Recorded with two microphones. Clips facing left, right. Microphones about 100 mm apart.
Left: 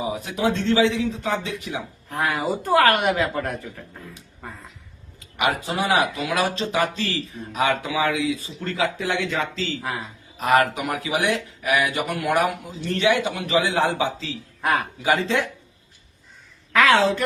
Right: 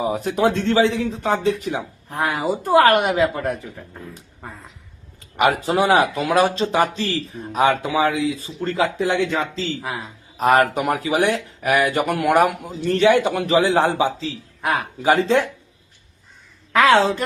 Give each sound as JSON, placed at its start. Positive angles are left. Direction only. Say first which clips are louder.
{"t": 0.3, "sound": "speech", "louder": "right 2 dB", "side_deg": -50}
{"t": 2.0, "sound": "a woman's voice", "louder": "right 2 dB", "side_deg": -25}
{"t": 5.4, "sound": "speech", "louder": "right 6 dB", "side_deg": -40}
{"t": 10.3, "sound": "speech", "louder": "right 3 dB", "side_deg": -40}
{"t": 12.8, "sound": "speech", "louder": "right 5 dB", "side_deg": -40}
{"t": 16.7, "sound": "a woman's voice", "louder": "right 2 dB", "side_deg": -20}